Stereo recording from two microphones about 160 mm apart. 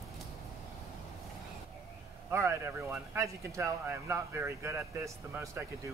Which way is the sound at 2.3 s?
15° right (ahead or behind).